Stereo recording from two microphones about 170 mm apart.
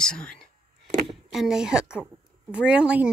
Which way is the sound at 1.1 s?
Centre (ahead or behind).